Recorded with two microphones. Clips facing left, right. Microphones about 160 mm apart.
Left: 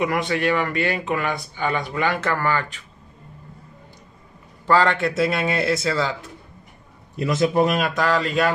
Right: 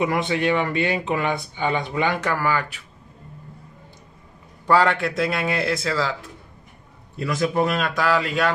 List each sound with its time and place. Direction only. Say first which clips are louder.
0.0 s speech: even; 25° right (ahead or behind)
4.6 s a man's voice: even; 10° right (ahead or behind)
4.9 s speech: left 2 dB; centre (ahead or behind)
7.2 s a man's voice: left 3 dB; 20° left (ahead or behind)
7.9 s speech: left 1 dB; 5° right (ahead or behind)